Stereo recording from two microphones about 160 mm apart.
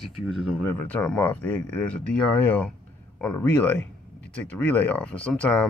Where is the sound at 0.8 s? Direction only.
10° left (ahead or behind).